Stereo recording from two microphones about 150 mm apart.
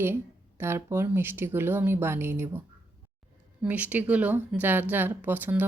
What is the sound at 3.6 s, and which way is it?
A woman's voice, 10° right (ahead or behind).